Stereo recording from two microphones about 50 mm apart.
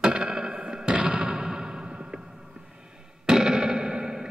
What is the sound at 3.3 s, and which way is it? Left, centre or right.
Music, centre.